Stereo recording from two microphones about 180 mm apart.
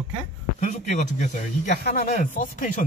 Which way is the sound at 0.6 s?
40° left (ahead or behind).